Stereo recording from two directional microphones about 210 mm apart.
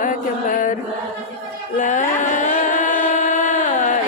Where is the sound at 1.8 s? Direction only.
35° left (ahead or behind).